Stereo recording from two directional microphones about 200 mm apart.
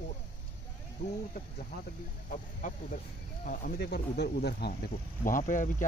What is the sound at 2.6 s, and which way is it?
Speech, 40° left (ahead or behind).